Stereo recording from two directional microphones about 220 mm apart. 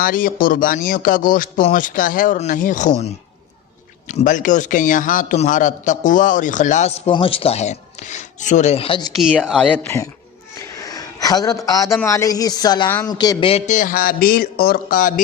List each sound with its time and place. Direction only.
0.0 s a man's voice: 40° left (ahead or behind)
4.1 s a man's voice: 35° left (ahead or behind)
9.2 s a man's voice: centre (ahead or behind); by 15.2 s 35° left (ahead or behind)